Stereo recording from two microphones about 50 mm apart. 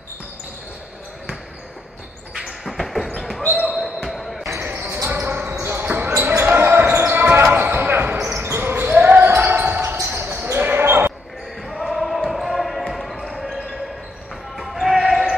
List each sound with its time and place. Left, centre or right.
2.3 s a sound: centre
2.8 s basketball bounce: centre
4.6 s basketball bounce: right
5.4 s basketball bounce: right
8.3 s basketball bounce: right
9.2 s basketball bounce: right
9.5 s basketball bounce: right
11.6 s basketball bounce: centre
14.6 s basketball bounce: centre